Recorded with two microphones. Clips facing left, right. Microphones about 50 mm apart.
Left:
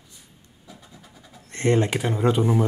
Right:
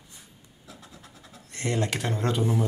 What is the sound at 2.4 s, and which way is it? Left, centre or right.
Speech, left.